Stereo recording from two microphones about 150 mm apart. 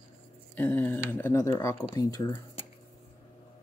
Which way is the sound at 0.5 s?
10° left (ahead or behind).